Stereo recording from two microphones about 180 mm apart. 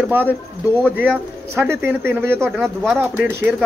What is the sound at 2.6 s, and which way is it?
Speech, centre (ahead or behind).